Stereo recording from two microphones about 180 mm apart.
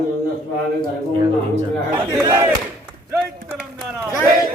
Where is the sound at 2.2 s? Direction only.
20° right (ahead or behind).